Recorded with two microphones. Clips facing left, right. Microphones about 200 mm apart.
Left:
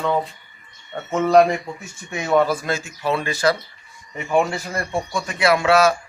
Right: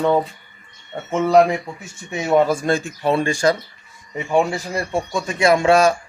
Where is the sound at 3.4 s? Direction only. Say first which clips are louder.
Right 1 dB; 35° right (ahead or behind).